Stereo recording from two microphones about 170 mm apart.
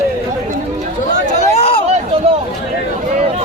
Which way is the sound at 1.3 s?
35° left (ahead or behind).